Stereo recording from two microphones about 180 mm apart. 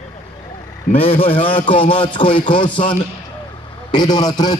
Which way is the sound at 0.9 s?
30° left (ahead or behind).